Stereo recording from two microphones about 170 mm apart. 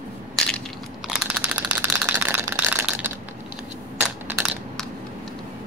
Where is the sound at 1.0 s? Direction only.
5° right (ahead or behind).